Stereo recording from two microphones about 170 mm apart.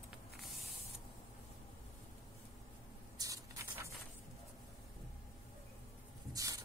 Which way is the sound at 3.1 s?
20° right (ahead or behind).